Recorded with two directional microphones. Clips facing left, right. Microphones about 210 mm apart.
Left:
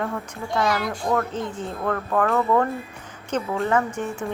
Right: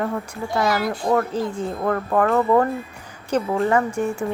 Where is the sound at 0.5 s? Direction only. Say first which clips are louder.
Right 2 dB; 5° right (ahead or behind).